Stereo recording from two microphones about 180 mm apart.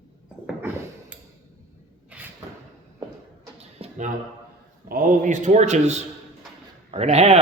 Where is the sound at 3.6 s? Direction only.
40° right (ahead or behind).